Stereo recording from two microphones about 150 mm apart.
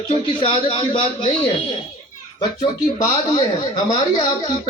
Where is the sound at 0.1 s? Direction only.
40° left (ahead or behind).